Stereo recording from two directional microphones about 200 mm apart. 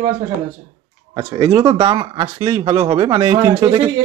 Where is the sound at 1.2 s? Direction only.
20° right (ahead or behind).